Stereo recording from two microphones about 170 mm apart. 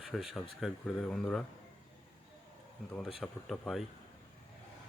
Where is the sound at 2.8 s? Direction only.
5° left (ahead or behind).